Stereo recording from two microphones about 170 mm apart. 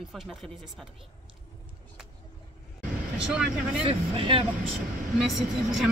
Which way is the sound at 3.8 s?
35° right (ahead or behind).